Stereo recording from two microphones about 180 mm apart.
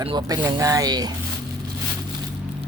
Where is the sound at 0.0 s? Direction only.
25° right (ahead or behind).